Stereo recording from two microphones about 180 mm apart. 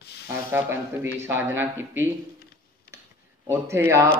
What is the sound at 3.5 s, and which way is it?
Speech, 15° right (ahead or behind).